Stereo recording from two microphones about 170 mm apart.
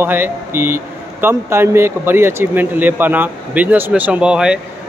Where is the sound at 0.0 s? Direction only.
10° right (ahead or behind).